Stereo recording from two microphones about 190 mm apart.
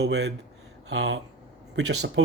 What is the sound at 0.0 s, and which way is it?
Speech, 60° right (ahead or behind).